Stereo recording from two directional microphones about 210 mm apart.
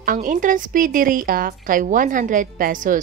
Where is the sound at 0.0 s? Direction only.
40° right (ahead or behind).